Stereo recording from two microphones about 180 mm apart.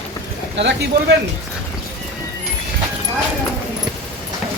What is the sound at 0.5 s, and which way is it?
Speech, 75° right (ahead or behind).